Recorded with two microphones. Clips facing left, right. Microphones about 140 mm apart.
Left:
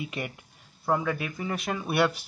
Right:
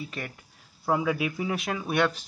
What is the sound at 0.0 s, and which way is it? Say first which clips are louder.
Speech: left 2 dB; 10° left (ahead or behind).